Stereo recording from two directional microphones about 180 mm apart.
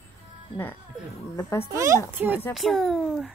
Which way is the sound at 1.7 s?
15° right (ahead or behind).